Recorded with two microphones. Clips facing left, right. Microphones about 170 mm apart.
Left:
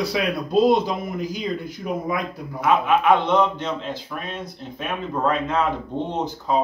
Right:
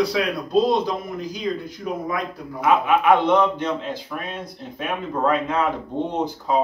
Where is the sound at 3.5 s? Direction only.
10° right (ahead or behind).